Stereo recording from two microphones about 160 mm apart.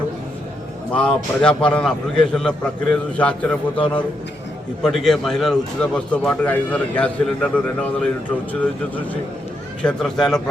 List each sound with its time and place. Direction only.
0.9 s a man's voice: 5° left (ahead or behind)
9.8 s a man's voice: 5° left (ahead or behind)